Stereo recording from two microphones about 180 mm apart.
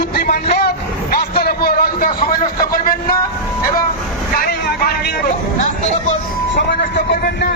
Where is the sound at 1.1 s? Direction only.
60° left (ahead or behind).